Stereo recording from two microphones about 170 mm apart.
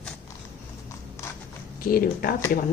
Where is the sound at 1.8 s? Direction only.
60° left (ahead or behind).